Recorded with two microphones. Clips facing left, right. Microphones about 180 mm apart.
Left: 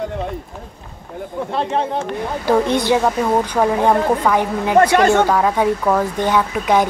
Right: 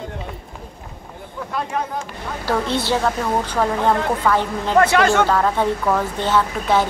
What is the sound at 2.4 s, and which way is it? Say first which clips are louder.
A woman's voice: left 5 dB; 15° left (ahead or behind).